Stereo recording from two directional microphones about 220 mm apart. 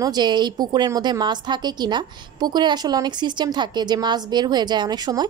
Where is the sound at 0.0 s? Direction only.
20° right (ahead or behind).